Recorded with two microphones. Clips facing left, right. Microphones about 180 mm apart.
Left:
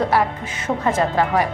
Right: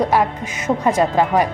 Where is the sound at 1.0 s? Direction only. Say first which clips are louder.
Right 2 dB; 15° right (ahead or behind).